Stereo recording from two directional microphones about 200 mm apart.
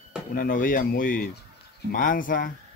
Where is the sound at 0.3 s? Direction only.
45° left (ahead or behind).